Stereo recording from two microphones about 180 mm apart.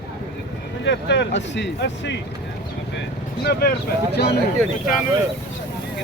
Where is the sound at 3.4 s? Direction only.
60° left (ahead or behind).